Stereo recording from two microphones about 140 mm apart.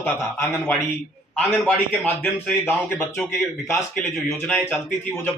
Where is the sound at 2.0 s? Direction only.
15° left (ahead or behind).